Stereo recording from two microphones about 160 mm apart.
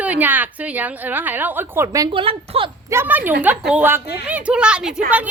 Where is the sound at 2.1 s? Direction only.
35° right (ahead or behind).